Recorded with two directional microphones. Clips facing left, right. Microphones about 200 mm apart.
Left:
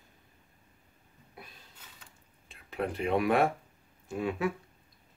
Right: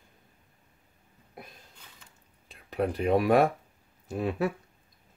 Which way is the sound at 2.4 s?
40° right (ahead or behind).